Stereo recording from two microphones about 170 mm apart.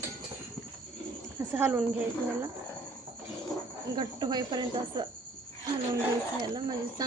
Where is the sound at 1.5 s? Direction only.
10° right (ahead or behind).